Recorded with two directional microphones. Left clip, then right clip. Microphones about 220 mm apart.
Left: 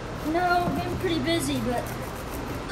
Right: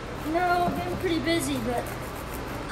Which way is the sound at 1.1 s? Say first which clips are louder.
Even; 45° right (ahead or behind).